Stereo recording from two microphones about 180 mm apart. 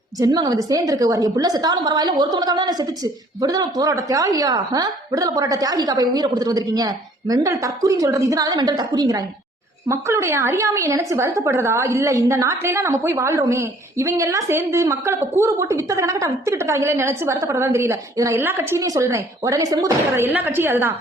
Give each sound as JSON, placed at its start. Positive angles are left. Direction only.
{"t": 0.2, "sound": "a woman's voice", "side_deg": -20}